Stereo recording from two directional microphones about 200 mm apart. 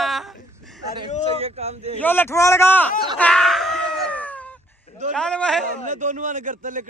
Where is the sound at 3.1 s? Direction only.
5° left (ahead or behind).